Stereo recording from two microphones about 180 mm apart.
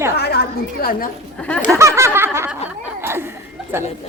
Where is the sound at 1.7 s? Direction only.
15° right (ahead or behind).